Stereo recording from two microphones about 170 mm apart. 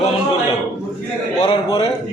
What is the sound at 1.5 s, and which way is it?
Speech, 30° left (ahead or behind).